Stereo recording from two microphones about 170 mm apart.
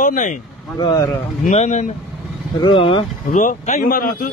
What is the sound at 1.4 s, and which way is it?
Speech, 45° left (ahead or behind).